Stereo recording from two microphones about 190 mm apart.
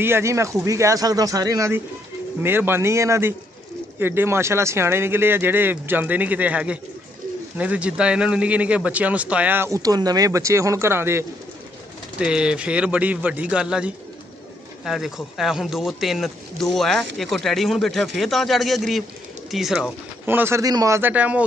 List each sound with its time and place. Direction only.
0.0 s a man's voice: 15° right (ahead or behind)